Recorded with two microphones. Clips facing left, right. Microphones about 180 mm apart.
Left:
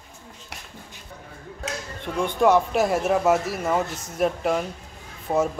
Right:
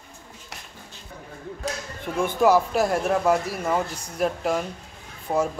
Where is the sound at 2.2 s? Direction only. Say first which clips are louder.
Even; 5° right (ahead or behind).